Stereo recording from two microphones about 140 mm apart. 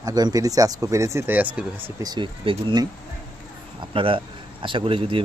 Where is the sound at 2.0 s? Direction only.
35° right (ahead or behind).